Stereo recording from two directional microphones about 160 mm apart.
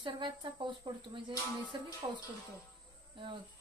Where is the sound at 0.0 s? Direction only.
30° right (ahead or behind).